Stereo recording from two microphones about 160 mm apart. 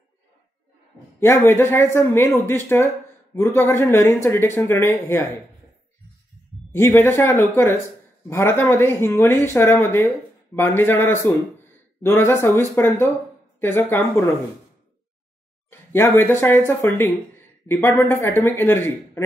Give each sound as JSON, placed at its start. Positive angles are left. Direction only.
{"t": 1.2, "sound": "speech", "side_deg": 15}
{"t": 6.7, "sound": "speech", "side_deg": 15}
{"t": 15.7, "sound": "speech", "side_deg": 15}